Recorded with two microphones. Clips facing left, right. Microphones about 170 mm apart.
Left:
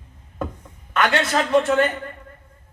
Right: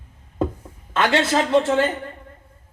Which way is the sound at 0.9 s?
25° right (ahead or behind).